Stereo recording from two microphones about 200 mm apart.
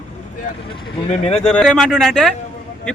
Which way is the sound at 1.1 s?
35° left (ahead or behind).